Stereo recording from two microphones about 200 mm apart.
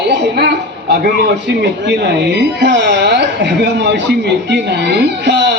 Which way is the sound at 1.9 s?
60° right (ahead or behind).